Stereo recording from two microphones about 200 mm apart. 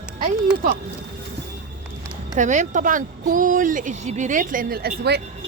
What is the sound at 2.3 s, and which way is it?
Speech, 40° right (ahead or behind).